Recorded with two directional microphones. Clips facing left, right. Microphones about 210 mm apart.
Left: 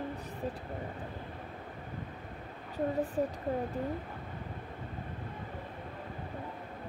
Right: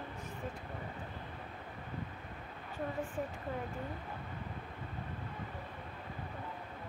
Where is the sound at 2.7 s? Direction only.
35° left (ahead or behind).